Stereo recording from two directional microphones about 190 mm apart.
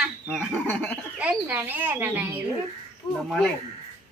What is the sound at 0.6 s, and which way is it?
Speech, 10° left (ahead or behind).